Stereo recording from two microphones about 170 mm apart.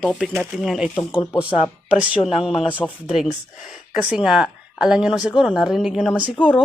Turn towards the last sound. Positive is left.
turn(degrees=-10)  # may be behind; listen again after turning